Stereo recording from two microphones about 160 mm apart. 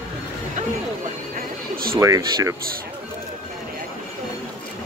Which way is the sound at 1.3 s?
65° right (ahead or behind).